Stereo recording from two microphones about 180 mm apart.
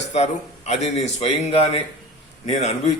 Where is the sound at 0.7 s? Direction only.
40° left (ahead or behind).